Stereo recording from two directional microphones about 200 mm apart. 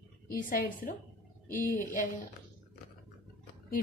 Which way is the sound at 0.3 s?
45° left (ahead or behind).